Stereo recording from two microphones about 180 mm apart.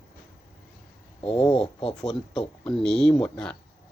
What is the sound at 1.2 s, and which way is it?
Speech, 30° left (ahead or behind).